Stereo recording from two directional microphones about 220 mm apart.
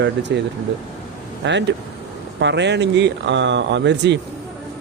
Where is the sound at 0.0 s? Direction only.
50° right (ahead or behind).